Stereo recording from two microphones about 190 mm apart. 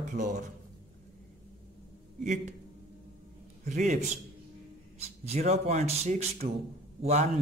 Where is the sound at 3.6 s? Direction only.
40° right (ahead or behind).